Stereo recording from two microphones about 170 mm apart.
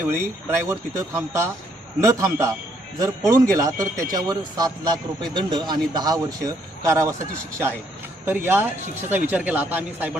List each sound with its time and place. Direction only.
0.4 s speech: 15° right (ahead or behind)